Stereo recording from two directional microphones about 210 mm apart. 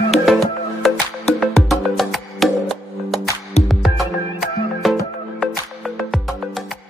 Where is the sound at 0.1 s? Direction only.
Centre (ahead or behind).